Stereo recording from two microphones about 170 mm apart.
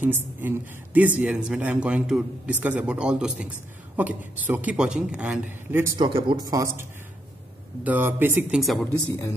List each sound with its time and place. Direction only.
0.0 s a man's voice: 10° right (ahead or behind)
5.9 s a man's voice: 30° right (ahead or behind); by 8.5 s 10° right (ahead or behind)
8.5 s speech: centre (ahead or behind)